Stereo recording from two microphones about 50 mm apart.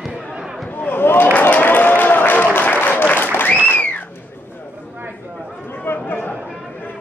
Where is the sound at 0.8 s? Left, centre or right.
Left.